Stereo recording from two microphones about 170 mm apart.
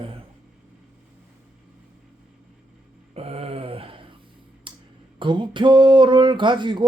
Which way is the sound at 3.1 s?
35° right (ahead or behind).